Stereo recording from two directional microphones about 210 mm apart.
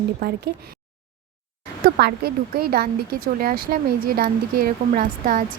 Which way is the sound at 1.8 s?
45° right (ahead or behind).